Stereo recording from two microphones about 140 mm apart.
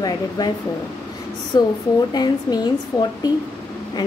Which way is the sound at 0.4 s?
25° left (ahead or behind).